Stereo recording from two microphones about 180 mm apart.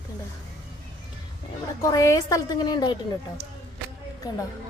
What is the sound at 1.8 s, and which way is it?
A woman's voice, 20° left (ahead or behind).